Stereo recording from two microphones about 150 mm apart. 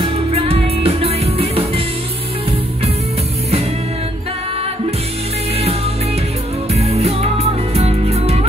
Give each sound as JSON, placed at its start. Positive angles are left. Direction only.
{"t": 0.0, "sound": "music", "side_deg": -40}
{"t": 6.7, "sound": "music", "side_deg": -45}